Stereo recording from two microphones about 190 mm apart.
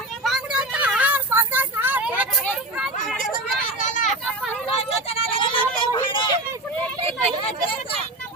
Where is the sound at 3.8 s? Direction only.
40° left (ahead or behind).